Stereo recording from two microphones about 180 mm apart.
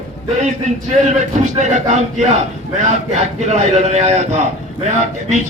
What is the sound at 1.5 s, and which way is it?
Speech, 40° right (ahead or behind).